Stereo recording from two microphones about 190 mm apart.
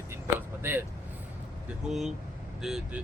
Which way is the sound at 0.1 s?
10° right (ahead or behind).